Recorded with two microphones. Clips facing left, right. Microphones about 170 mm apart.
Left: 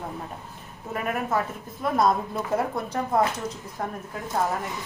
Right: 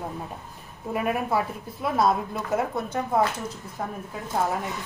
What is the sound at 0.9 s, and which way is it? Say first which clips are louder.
A woman's voice: right 2 dB; 10° right (ahead or behind).